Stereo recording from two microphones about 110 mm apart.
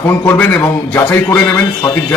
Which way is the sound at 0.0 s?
25° left (ahead or behind).